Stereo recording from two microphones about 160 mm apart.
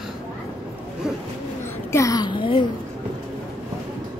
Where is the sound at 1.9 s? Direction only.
20° left (ahead or behind).